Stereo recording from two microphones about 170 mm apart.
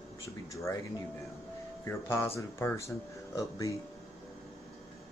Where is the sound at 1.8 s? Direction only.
15° left (ahead or behind).